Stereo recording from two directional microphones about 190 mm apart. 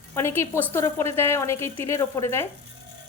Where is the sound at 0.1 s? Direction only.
10° left (ahead or behind).